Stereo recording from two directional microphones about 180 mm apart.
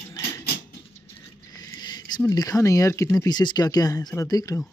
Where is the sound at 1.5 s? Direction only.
20° left (ahead or behind).